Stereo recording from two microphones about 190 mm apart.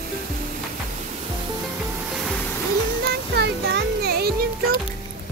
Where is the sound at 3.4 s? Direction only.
55° right (ahead or behind).